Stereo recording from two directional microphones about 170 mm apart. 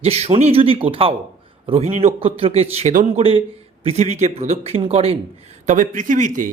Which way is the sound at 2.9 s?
50° right (ahead or behind).